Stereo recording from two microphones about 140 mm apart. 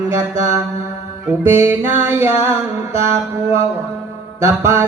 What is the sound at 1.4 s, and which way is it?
Music, 15° right (ahead or behind).